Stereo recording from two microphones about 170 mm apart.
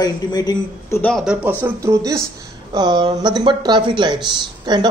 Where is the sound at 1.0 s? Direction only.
Centre (ahead or behind).